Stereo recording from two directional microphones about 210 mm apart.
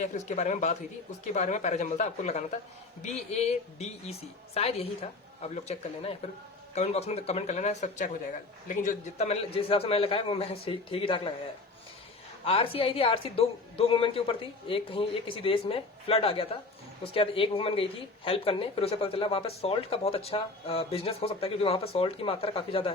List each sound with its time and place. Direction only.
0.0 s a woman's voice: 35° left (ahead or behind)
12.5 s speech: 25° left (ahead or behind)